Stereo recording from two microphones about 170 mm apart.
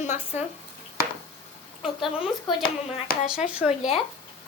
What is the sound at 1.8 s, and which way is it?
Speech, centre (ahead or behind).